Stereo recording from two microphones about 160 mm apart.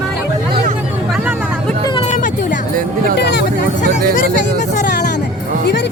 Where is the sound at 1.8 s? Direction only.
30° left (ahead or behind).